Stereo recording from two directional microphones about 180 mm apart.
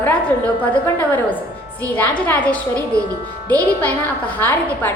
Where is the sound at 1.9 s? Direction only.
10° left (ahead or behind).